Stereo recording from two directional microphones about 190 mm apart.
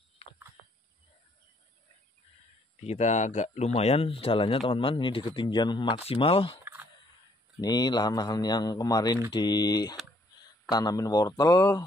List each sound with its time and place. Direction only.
2.8 s speech: 35° left (ahead or behind)
6.6 s fowl: 10° right (ahead or behind)
7.6 s speech: 20° left (ahead or behind)